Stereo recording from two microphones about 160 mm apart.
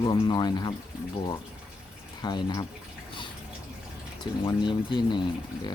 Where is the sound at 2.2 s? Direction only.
25° left (ahead or behind).